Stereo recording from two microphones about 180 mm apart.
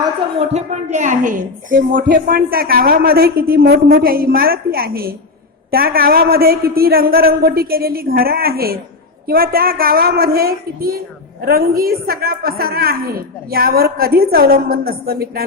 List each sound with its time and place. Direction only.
0.3 s a woman's voice: 40° right (ahead or behind); by 15.4 s 55° right (ahead or behind)